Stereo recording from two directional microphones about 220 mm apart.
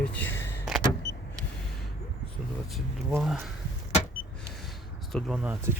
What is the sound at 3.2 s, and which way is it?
Speech, centre (ahead or behind).